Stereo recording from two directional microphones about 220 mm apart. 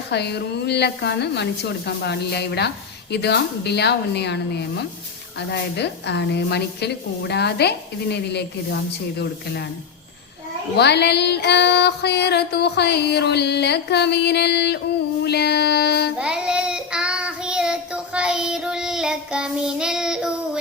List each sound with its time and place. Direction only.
0.1 s music: 50° left (ahead or behind)
10.8 s music: 50° left (ahead or behind)
16.1 s child singing: 5° right (ahead or behind)